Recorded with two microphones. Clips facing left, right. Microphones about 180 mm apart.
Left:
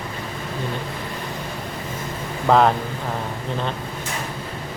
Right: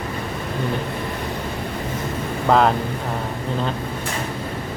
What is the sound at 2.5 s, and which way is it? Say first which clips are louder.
Speech: even; centre (ahead or behind).